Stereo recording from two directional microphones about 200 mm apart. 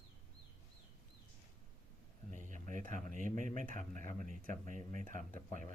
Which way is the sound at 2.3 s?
40° right (ahead or behind).